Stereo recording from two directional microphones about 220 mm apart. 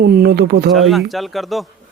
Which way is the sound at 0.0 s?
45° right (ahead or behind).